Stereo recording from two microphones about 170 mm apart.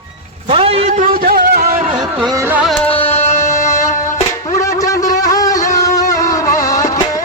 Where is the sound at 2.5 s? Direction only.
5° right (ahead or behind).